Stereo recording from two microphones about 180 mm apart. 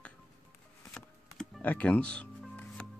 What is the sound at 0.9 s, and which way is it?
Music, 5° left (ahead or behind).